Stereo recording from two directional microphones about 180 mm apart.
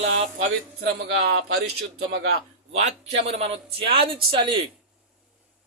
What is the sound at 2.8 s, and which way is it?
A man's voice, 35° right (ahead or behind).